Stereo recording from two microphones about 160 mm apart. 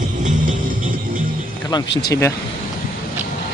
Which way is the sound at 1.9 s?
85° left.